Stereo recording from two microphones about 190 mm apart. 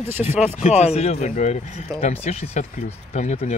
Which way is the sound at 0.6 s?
35° left (ahead or behind).